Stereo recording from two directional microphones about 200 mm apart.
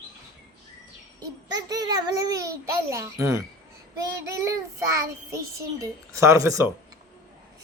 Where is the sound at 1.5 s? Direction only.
20° right (ahead or behind).